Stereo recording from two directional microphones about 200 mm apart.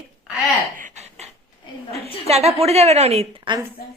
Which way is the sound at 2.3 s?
30° right (ahead or behind).